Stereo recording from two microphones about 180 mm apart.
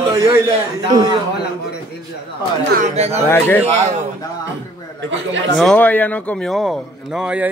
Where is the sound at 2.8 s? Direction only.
35° right (ahead or behind).